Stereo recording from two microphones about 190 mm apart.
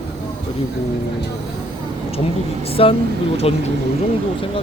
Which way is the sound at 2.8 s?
30° left (ahead or behind).